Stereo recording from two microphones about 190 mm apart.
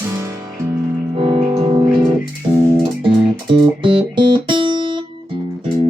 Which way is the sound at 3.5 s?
25° right (ahead or behind).